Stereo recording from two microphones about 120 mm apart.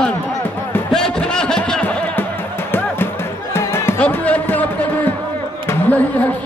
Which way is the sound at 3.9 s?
10° left (ahead or behind).